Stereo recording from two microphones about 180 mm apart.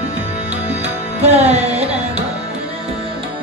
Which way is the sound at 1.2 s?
40° right (ahead or behind).